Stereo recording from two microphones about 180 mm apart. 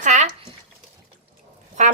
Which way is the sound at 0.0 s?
40° right (ahead or behind).